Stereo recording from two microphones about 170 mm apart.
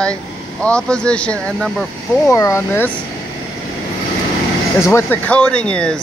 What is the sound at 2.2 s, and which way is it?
Speech, 15° left (ahead or behind).